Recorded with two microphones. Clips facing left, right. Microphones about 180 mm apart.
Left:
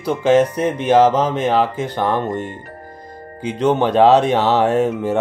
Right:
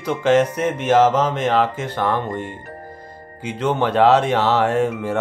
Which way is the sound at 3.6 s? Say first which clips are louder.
Left 3 dB; 15° left (ahead or behind).